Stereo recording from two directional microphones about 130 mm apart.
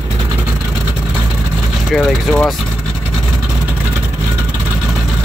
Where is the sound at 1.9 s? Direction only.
Centre (ahead or behind).